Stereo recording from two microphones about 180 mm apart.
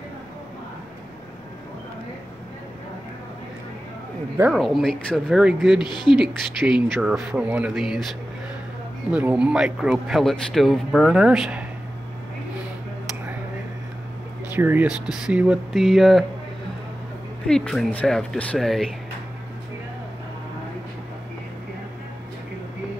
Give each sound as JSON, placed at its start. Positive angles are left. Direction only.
{"t": 4.4, "sound": "speech", "side_deg": 0}
{"t": 5.9, "sound": "speech", "side_deg": 25}
{"t": 6.1, "sound": "speech", "side_deg": 0}
{"t": 9.1, "sound": "speech", "side_deg": -5}
{"t": 14.5, "sound": "speech", "side_deg": -10}
{"t": 17.5, "sound": "speech", "side_deg": 5}